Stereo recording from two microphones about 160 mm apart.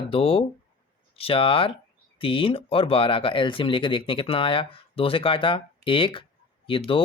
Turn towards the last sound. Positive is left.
turn(degrees=35)  # may be behind; listen again after turning